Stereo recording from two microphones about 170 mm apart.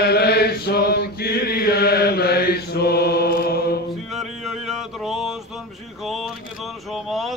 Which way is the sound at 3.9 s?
Centre (ahead or behind).